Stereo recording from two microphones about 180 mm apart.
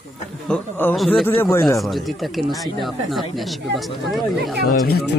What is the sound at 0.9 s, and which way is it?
Speech, centre (ahead or behind).